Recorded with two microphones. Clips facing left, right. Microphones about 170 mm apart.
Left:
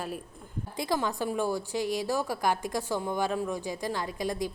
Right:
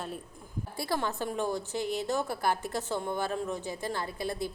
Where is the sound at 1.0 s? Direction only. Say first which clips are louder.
Left 2 dB; 10° left (ahead or behind).